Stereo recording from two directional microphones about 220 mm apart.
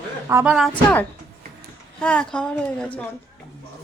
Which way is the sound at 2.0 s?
5° left (ahead or behind).